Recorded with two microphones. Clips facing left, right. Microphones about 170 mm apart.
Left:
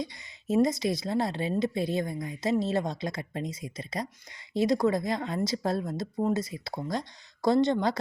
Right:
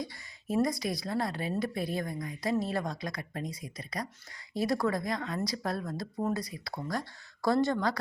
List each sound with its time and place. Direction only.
0.0 s a woman's voice: 20° left (ahead or behind)